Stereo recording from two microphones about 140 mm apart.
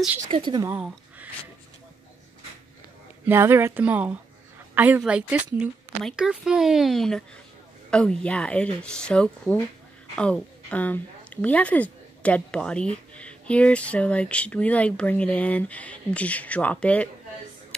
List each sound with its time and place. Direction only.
0.3 s speech: 30° right (ahead or behind)
0.7 s speech: 10° right (ahead or behind)
3.3 s a woman's voice: 15° right (ahead or behind); by 17.1 s 10° left (ahead or behind)